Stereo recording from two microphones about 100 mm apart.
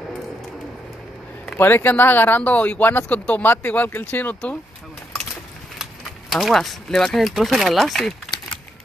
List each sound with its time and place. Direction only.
1.6 s speech: 20° left (ahead or behind)
6.3 s speech: centre (ahead or behind)